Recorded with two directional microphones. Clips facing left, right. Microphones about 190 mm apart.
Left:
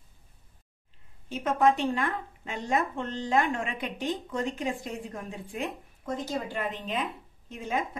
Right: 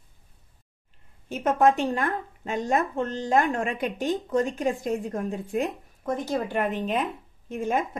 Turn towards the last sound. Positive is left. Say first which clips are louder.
# right 5 dB
turn(degrees=-50)  # may be behind; listen again after turning